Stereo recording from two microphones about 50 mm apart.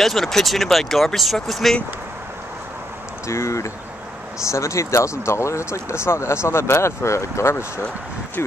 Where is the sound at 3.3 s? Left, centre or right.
Left.